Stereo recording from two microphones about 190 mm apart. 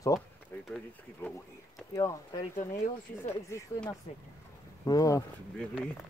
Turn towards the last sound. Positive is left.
turn(degrees=20)  # may be behind; listen again after turning